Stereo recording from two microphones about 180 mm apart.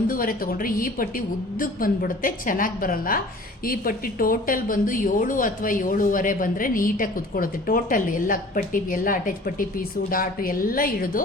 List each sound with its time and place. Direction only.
0.1 s speech: 50° left (ahead or behind)